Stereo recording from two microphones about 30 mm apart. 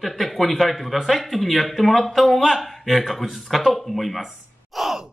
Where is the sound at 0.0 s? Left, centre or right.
Centre.